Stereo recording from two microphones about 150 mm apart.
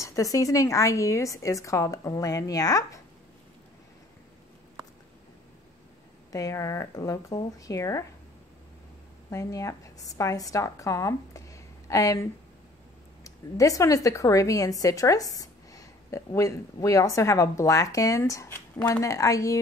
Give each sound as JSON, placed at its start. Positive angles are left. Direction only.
{"t": 0.0, "sound": "speech", "side_deg": 20}
{"t": 6.3, "sound": "speech", "side_deg": 20}
{"t": 9.3, "sound": "a woman's voice", "side_deg": 20}